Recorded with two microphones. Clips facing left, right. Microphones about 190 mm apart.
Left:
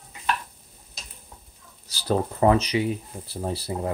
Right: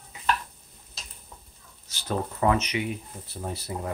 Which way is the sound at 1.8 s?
35° left (ahead or behind).